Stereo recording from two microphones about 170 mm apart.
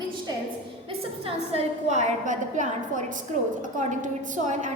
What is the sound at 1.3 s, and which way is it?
A woman's voice, 40° right (ahead or behind).